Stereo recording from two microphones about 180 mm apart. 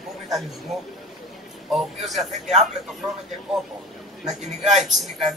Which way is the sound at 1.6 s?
Centre (ahead or behind).